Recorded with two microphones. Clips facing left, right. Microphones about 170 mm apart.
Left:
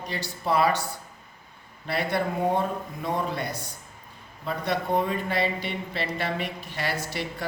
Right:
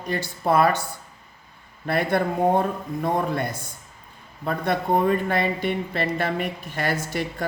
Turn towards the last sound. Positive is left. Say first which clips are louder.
# right 4 dB
turn(degrees=-50)  # may be behind; listen again after turning